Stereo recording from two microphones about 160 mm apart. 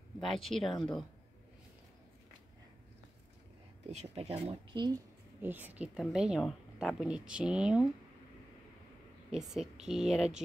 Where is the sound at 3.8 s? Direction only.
45° right (ahead or behind).